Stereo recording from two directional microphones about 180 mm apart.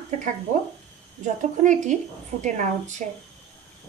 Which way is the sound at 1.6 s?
40° right (ahead or behind).